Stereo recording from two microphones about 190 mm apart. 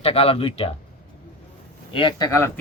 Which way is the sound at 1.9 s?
20° left (ahead or behind).